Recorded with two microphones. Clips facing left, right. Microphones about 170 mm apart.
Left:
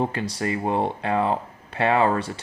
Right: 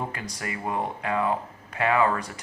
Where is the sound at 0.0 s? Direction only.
30° left (ahead or behind).